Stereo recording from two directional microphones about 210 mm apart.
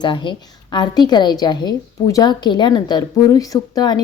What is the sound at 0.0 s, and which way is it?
A woman's voice, 20° left (ahead or behind).